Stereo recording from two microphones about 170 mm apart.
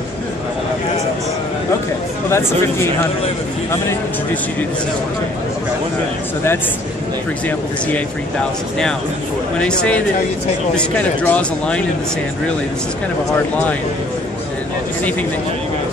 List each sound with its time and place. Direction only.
2.2 s speech: 15° left (ahead or behind)
9.6 s speech: 5° left (ahead or behind)